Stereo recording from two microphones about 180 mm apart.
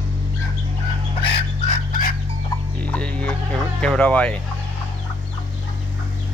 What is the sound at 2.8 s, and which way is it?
Hum, 5° left (ahead or behind).